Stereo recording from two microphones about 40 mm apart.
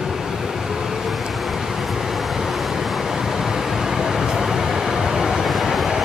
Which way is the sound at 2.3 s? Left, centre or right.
Centre.